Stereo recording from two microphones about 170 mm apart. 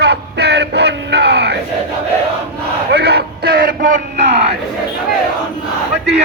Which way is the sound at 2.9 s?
75° right (ahead or behind).